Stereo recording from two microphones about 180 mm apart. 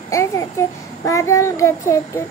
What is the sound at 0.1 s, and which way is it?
A child's voice, 15° left (ahead or behind).